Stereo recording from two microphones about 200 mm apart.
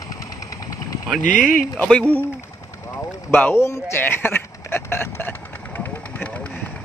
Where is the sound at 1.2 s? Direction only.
40° left (ahead or behind).